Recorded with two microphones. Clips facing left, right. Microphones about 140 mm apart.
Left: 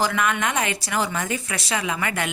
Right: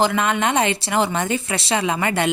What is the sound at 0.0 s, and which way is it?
Speech, 25° right (ahead or behind).